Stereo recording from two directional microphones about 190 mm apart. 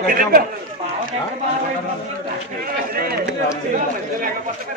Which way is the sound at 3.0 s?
55° right (ahead or behind).